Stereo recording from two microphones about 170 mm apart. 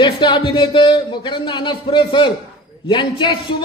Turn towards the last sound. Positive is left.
turn(degrees=25)  # may be behind; listen again after turning